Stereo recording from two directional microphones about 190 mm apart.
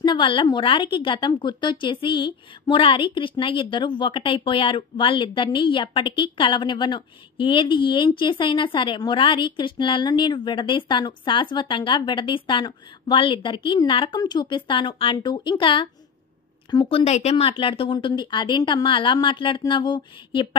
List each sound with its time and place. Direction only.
0.0 s a woman's voice: 25° left (ahead or behind)